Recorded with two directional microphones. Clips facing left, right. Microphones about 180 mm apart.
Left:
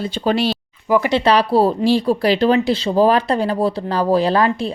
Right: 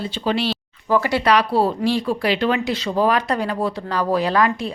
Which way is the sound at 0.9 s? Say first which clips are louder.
Left 3 dB; 20° left (ahead or behind).